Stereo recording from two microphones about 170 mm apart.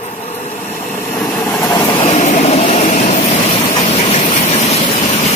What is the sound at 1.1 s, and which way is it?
Vehicle, 10° left (ahead or behind).